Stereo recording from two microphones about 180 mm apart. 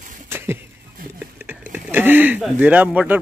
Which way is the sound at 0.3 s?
15° right (ahead or behind).